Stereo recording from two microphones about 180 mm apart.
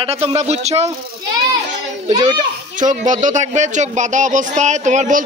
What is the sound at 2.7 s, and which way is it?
Speech, 45° right (ahead or behind).